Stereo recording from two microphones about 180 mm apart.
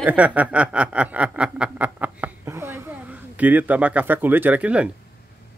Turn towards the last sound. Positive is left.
turn(degrees=-5)  # may be behind; listen again after turning